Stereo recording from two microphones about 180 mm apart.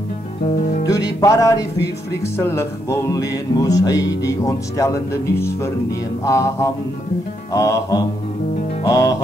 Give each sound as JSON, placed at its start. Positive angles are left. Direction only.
{"t": 0.8, "sound": "speech", "side_deg": 20}
{"t": 8.8, "sound": "music", "side_deg": 20}